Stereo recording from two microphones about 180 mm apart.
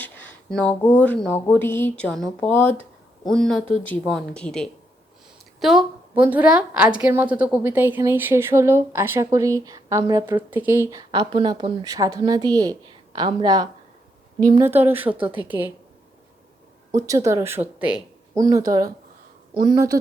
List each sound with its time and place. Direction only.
0.0 s speech: 5° left (ahead or behind)
5.5 s a sound: centre (ahead or behind)
6.2 s a woman's voice: 10° right (ahead or behind)
11.1 s a woman's voice: 25° right (ahead or behind)
14.6 s a woman's voice: 10° right (ahead or behind)
16.9 s a woman's voice: 15° right (ahead or behind)
18.3 s a woman's voice: 20° right (ahead or behind)